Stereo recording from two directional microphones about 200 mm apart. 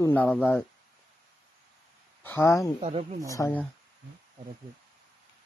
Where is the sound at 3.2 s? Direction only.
15° left (ahead or behind).